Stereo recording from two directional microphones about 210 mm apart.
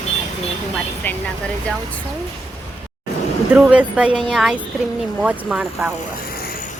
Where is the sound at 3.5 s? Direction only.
5° right (ahead or behind).